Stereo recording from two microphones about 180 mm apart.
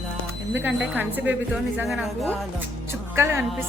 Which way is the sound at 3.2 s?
15° right (ahead or behind).